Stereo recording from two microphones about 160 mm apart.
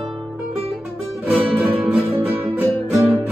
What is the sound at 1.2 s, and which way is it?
Music, 10° right (ahead or behind).